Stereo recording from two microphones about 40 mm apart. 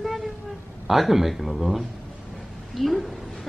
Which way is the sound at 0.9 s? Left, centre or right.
Centre.